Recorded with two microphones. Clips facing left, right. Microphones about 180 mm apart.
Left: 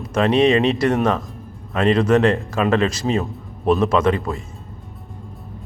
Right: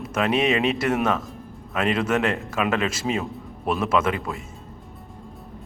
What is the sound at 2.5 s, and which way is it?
Speech, 35° left (ahead or behind).